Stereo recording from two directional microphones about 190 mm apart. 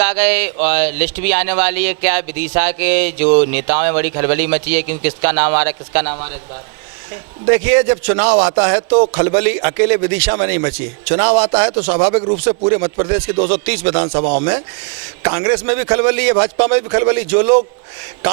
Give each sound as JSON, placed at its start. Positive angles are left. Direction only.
{"t": 0.0, "sound": "speech", "side_deg": -15}
{"t": 7.4, "sound": "speech", "side_deg": -15}
{"t": 12.5, "sound": "speech", "side_deg": -20}
{"t": 15.2, "sound": "speech", "side_deg": -20}